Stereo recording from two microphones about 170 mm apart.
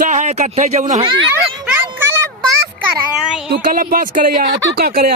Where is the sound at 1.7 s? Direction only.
10° right (ahead or behind).